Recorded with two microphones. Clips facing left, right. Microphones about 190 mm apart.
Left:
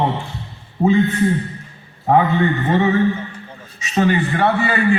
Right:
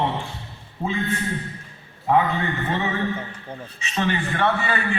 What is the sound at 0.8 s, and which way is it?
Speech, 40° left (ahead or behind).